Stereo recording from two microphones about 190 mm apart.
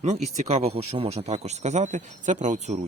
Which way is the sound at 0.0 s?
35° right (ahead or behind).